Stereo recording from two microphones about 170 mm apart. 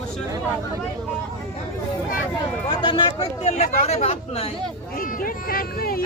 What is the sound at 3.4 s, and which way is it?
Speech, 40° left (ahead or behind).